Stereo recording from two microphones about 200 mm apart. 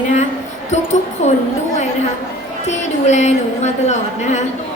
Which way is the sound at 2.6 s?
35° left (ahead or behind).